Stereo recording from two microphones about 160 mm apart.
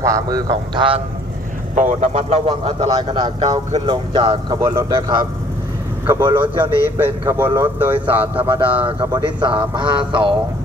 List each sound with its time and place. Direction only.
0.0 s a man's voice: 20° right (ahead or behind)
1.8 s a man's voice: 50° right (ahead or behind); by 8.3 s 10° right (ahead or behind)
8.4 s a man's voice: 35° right (ahead or behind)